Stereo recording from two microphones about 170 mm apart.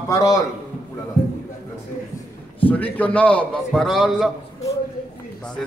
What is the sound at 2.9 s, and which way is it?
A man's voice, 10° left (ahead or behind).